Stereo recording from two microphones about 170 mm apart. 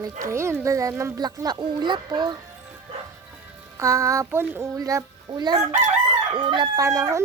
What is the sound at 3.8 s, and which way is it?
A child's voice, 20° right (ahead or behind).